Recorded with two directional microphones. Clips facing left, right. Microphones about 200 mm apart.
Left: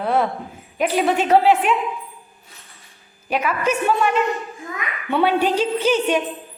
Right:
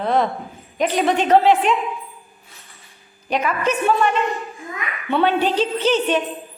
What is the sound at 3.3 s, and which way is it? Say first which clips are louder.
A woman's voice: even; 5° left (ahead or behind).